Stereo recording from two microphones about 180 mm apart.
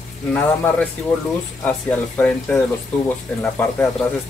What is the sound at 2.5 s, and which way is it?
Speech, 10° left (ahead or behind).